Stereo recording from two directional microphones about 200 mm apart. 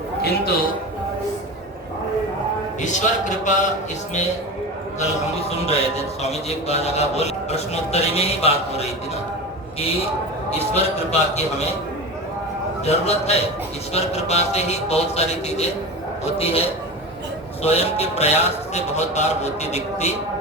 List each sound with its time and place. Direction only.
0.2 s a man's voice: 50° left (ahead or behind)
2.8 s a man's voice: 40° left (ahead or behind)
5.5 s a man's voice: 30° left (ahead or behind)
11.1 s a man's voice: 35° left (ahead or behind)
12.8 s a man's voice: 30° left (ahead or behind)